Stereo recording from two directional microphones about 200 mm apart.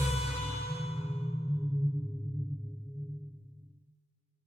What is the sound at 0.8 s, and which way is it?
Music, 30° left (ahead or behind).